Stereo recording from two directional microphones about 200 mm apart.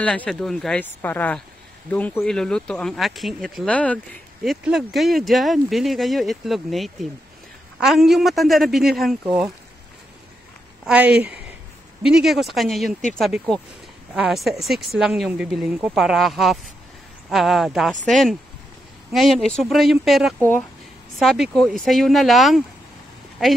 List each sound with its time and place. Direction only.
0.0 s speech: 5° left (ahead or behind)
10.9 s speech: 5° right (ahead or behind)